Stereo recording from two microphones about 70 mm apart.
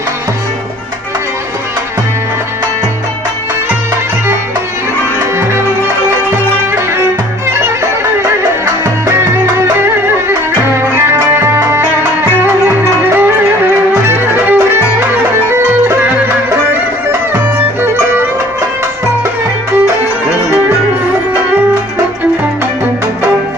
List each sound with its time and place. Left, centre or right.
8.8 s music: right
14.0 s music: right
17.1 s music: right